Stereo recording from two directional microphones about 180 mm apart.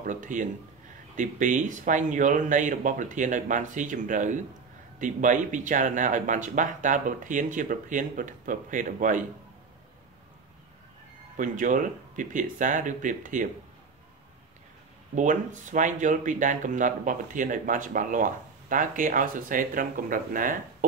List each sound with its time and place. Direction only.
0.0 s speech: 45° right (ahead or behind)
11.3 s speech: 45° right (ahead or behind)
15.1 s speech: 45° right (ahead or behind)